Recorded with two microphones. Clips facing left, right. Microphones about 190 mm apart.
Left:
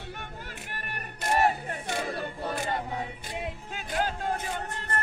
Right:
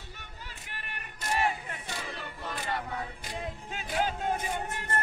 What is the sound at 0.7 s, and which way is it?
Battle cry, 50° left (ahead or behind).